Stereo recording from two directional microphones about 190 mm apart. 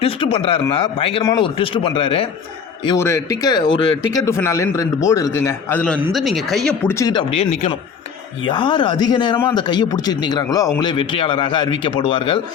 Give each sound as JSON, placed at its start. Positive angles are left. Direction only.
{"t": 0.0, "sound": "a man's voice", "side_deg": 30}
{"t": 2.8, "sound": "a man's voice", "side_deg": 15}
{"t": 7.0, "sound": "a man's voice", "side_deg": 25}